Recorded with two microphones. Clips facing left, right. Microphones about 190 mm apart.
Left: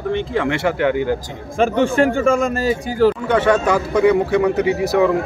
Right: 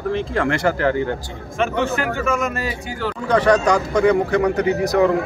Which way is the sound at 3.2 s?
5° left (ahead or behind).